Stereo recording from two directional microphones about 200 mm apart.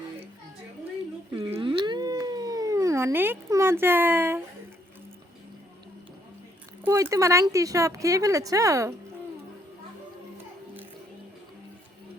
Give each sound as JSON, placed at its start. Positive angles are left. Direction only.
{"t": 1.5, "sound": "cat", "side_deg": -25}
{"t": 6.8, "sound": "speech", "side_deg": -15}